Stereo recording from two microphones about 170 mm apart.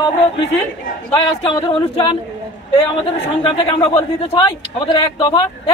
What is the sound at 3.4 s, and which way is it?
A man's voice, 30° left (ahead or behind).